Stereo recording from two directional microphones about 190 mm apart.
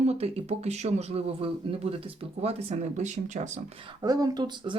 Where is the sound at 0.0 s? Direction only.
35° right (ahead or behind).